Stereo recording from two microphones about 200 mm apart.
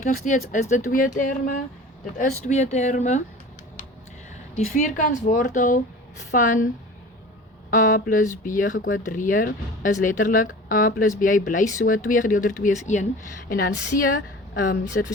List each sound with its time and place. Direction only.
0.0 s speech: 35° left (ahead or behind)
4.5 s speech: 35° left (ahead or behind)
7.7 s speech: 40° left (ahead or behind)
15.0 s speech: 55° left (ahead or behind)